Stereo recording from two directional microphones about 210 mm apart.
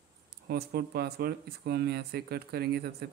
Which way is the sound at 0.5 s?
50° right (ahead or behind).